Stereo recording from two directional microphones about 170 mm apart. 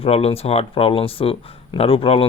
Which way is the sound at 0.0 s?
35° left (ahead or behind).